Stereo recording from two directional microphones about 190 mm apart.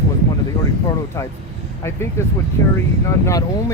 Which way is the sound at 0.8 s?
15° left (ahead or behind).